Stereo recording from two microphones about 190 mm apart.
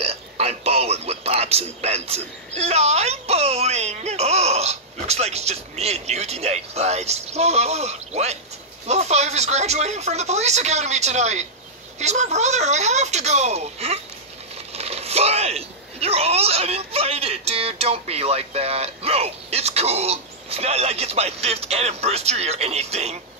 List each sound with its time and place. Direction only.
0.0 s speech: 30° right (ahead or behind)